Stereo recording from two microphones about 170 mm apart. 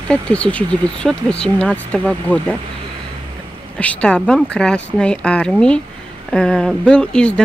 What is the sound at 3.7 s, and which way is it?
Speech, 5° left (ahead or behind).